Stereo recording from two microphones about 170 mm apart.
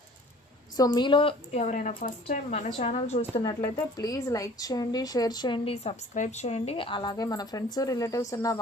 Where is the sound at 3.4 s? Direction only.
20° left (ahead or behind).